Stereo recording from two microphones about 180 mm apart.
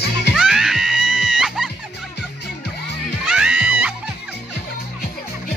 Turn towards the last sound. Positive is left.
turn(degrees=-5)  # may be behind; listen again after turning